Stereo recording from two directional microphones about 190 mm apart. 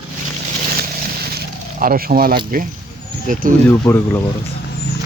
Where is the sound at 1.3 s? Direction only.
50° right (ahead or behind).